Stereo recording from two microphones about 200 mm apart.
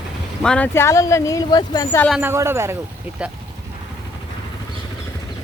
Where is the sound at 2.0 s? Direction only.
Centre (ahead or behind).